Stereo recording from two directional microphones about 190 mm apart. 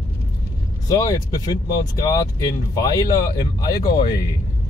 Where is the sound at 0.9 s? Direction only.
20° left (ahead or behind).